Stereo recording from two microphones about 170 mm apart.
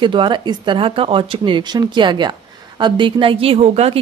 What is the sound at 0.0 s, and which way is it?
A woman's voice, 30° right (ahead or behind).